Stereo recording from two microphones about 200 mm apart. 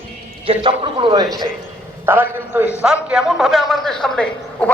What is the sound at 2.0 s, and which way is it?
A man's voice, 10° right (ahead or behind).